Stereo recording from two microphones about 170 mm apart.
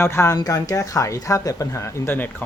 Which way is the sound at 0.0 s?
15° left (ahead or behind).